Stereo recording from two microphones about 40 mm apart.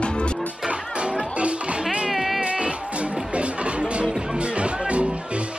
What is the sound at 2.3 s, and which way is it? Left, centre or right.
Music, right.